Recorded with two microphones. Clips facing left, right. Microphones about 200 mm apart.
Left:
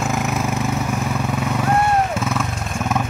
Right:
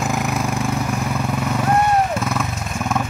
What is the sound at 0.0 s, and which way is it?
Vehicle, centre (ahead or behind).